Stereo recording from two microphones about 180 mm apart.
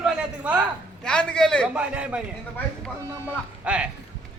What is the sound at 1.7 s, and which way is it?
Speech, 5° right (ahead or behind).